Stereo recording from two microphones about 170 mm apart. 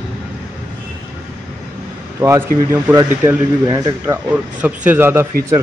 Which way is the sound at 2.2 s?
15° right (ahead or behind).